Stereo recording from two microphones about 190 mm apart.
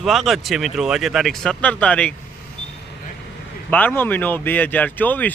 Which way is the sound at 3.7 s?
10° left (ahead or behind).